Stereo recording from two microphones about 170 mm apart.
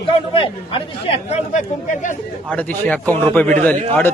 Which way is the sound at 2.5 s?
10° left (ahead or behind).